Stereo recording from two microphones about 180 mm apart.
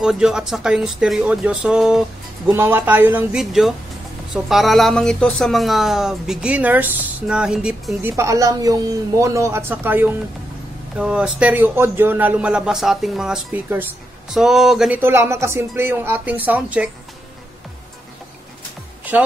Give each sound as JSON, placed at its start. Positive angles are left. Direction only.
{"t": 0.0, "sound": "a man's voice", "side_deg": -5}
{"t": 8.2, "sound": "a man's voice", "side_deg": -15}